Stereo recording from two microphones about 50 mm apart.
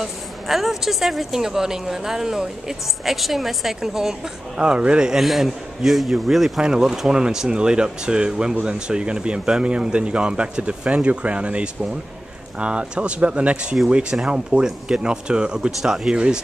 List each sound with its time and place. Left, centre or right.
0.0 s a woman's voice: centre
5.2 s a man's voice: centre